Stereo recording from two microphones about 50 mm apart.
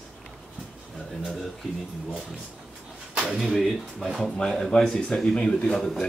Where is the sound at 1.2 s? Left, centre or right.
Centre.